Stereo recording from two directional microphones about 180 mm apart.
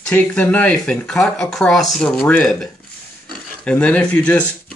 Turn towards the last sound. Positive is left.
turn(degrees=10)  # may be behind; listen again after turning